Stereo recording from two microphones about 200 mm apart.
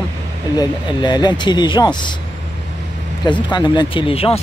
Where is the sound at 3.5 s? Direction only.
20° left (ahead or behind).